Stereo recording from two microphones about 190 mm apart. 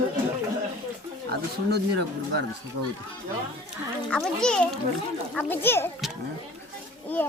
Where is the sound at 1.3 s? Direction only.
60° right (ahead or behind).